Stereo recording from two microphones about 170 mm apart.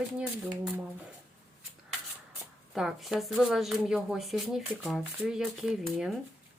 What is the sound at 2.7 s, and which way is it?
Speech, centre (ahead or behind).